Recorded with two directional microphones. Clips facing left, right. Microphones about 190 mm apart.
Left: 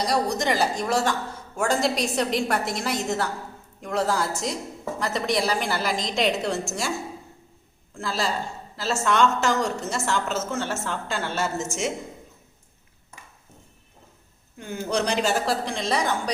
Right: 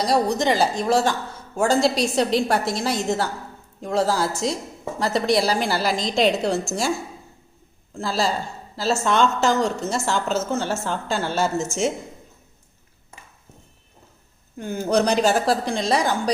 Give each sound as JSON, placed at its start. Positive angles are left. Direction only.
{"t": 0.3, "sound": "a woman's voice", "side_deg": -25}
{"t": 8.0, "sound": "a woman's voice", "side_deg": -35}
{"t": 14.6, "sound": "a woman's voice", "side_deg": -40}